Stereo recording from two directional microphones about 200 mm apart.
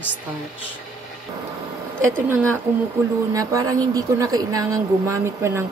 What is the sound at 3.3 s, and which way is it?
A woman's voice, 15° right (ahead or behind).